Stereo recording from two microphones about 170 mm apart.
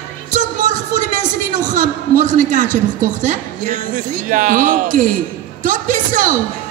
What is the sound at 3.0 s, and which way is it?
A woman's voice, 50° right (ahead or behind).